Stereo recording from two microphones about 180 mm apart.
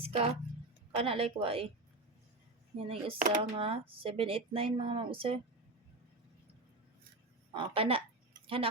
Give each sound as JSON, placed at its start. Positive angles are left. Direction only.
{"t": 0.0, "sound": "speech", "side_deg": -35}
{"t": 2.7, "sound": "speech", "side_deg": -35}
{"t": 3.2, "sound": "speech", "side_deg": -45}
{"t": 3.6, "sound": "speech", "side_deg": -30}
{"t": 7.5, "sound": "speech", "side_deg": -30}